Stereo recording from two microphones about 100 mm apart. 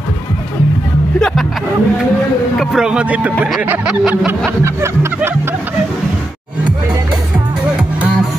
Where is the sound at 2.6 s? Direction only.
5° right (ahead or behind).